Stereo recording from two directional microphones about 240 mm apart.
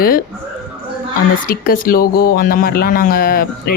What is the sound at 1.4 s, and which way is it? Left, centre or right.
Speech, left.